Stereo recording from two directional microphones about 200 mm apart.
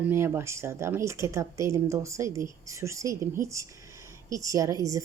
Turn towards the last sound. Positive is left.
turn(degrees=-15)  # may be behind; listen again after turning